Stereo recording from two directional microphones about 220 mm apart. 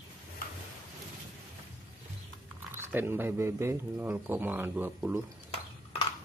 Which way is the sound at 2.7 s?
10° right (ahead or behind).